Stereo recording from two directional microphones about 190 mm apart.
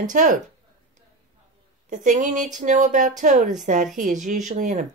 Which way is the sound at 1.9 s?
40° right (ahead or behind).